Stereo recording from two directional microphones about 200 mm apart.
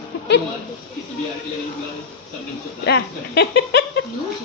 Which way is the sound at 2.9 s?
55° left (ahead or behind).